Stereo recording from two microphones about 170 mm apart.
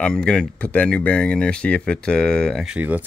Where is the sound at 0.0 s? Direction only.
5° left (ahead or behind).